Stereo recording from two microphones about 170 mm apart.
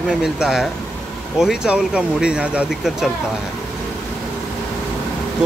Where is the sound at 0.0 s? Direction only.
Centre (ahead or behind).